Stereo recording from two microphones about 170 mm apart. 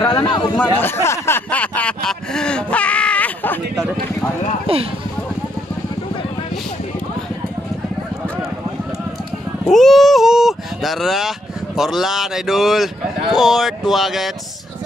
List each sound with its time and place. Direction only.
0.2 s a man's voice: 25° left (ahead or behind)
0.6 s a sound: 10° left (ahead or behind)
9.7 s speech: centre (ahead or behind)